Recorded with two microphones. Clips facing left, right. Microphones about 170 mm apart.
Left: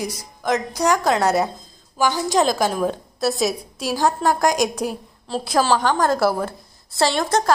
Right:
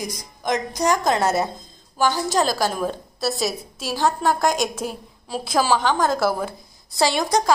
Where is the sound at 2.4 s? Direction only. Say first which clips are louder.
Left 4 dB; centre (ahead or behind).